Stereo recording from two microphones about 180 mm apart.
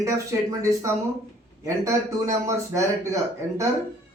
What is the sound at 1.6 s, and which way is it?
Speech, 15° right (ahead or behind).